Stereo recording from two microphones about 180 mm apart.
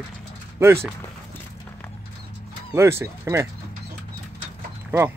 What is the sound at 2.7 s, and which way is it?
Speech, 15° right (ahead or behind).